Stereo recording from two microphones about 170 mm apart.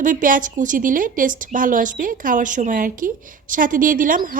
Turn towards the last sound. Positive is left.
turn(degrees=-55)  # may be behind; listen again after turning